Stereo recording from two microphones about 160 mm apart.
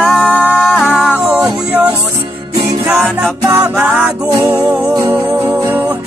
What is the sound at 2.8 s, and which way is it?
Music, centre (ahead or behind).